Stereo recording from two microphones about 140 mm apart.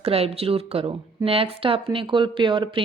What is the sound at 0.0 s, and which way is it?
Speech, 45° right (ahead or behind).